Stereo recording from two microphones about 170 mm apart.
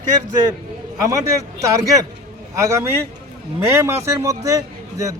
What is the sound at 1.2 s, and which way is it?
A man's voice, 20° right (ahead or behind).